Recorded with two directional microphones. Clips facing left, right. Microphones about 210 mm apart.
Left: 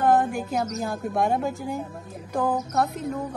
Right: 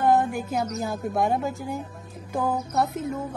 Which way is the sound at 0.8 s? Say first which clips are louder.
Even; centre (ahead or behind).